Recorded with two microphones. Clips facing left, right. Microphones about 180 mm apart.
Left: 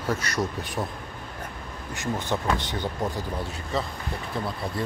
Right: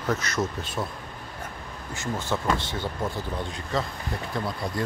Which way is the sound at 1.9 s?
15° left (ahead or behind).